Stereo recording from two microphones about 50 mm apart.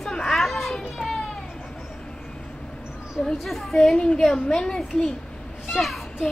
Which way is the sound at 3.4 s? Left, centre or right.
Centre.